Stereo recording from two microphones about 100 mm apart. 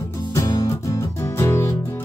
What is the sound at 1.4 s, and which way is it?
Music, 30° left (ahead or behind).